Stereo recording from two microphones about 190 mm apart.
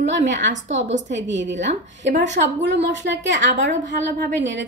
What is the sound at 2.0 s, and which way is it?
A woman's voice, 70° right (ahead or behind).